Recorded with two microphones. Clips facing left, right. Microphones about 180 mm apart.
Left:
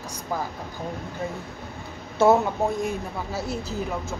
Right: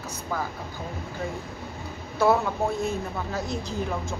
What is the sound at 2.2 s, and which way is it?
Speech, 25° left (ahead or behind).